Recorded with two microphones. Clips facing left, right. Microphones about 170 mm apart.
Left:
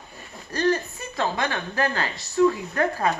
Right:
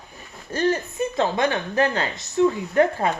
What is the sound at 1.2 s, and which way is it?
A woman's voice, 20° right (ahead or behind).